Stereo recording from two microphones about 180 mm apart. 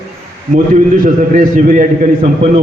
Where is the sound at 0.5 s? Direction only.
45° right (ahead or behind).